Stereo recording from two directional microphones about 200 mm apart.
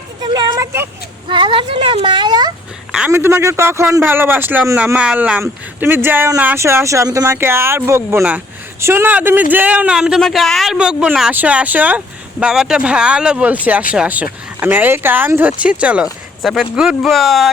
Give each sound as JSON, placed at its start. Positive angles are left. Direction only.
{"t": 0.2, "sound": "vehicle", "side_deg": -20}
{"t": 1.3, "sound": "speech", "side_deg": -25}
{"t": 2.9, "sound": "a man's voice", "side_deg": -10}